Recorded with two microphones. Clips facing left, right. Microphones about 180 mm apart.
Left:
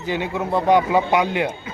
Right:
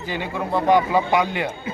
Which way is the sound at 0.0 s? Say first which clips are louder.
Left 3 dB; 20° left (ahead or behind).